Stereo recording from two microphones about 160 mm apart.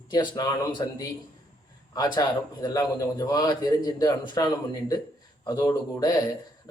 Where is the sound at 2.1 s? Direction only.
25° left (ahead or behind).